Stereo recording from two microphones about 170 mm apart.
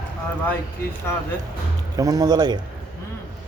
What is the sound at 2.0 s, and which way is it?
Speech, 20° right (ahead or behind).